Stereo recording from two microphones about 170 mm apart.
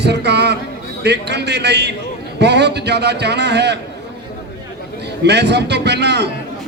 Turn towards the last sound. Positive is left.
turn(degrees=-80)